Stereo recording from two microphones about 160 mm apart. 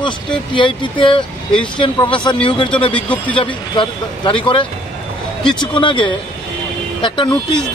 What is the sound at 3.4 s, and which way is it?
Speech, 30° left (ahead or behind).